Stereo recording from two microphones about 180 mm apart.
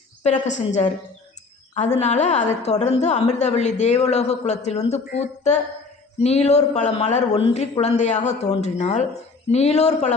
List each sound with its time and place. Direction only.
0.4 s a woman's voice: 40° left (ahead or behind)